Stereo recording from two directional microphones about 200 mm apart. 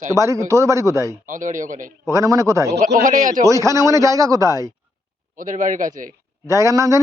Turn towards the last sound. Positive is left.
turn(degrees=-15)  # may be behind; listen again after turning